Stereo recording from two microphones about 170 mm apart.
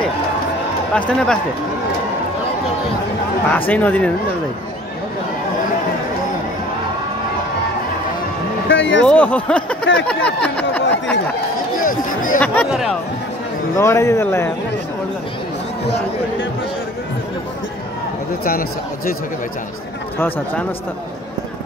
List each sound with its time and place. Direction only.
0.9 s speech: 5° left (ahead or behind)
3.4 s speech: 10° left (ahead or behind)
8.6 s speech: 90° left
9.0 s speech: 10° left (ahead or behind)
11.8 s speech: 55° left (ahead or behind)
13.7 s speech: 15° left (ahead or behind)
18.4 s speech: 60° left (ahead or behind)
20.2 s speech: 10° left (ahead or behind)